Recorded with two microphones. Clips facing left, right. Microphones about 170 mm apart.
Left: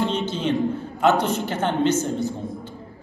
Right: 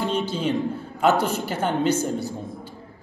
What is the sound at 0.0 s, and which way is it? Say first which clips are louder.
Music: left 1 dB; 10° right (ahead or behind).